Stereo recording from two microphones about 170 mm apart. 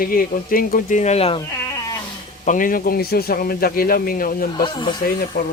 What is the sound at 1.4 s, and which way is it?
Sheep, 20° left (ahead or behind).